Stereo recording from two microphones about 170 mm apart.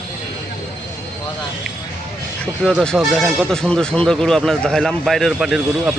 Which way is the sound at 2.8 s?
Centre (ahead or behind).